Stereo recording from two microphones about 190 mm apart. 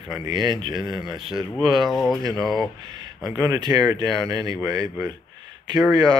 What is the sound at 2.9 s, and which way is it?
Speech, 20° right (ahead or behind).